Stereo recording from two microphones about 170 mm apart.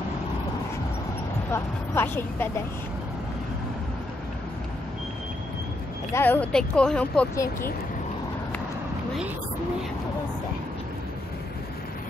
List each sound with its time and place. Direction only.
1.5 s speech: 15° left (ahead or behind)
6.1 s speech: 10° left (ahead or behind)